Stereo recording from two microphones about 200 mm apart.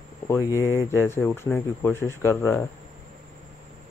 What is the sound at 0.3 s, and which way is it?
Speech, 15° left (ahead or behind).